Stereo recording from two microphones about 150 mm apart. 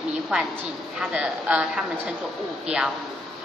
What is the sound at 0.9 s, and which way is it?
A woman's voice, 5° right (ahead or behind).